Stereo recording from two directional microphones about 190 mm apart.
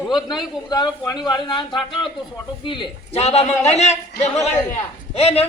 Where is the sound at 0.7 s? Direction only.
20° left (ahead or behind).